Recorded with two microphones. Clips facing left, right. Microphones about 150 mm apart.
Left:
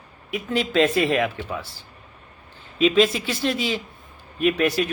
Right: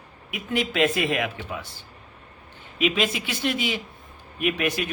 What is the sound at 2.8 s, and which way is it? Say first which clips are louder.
Speech: left 7 dB; 30° left (ahead or behind).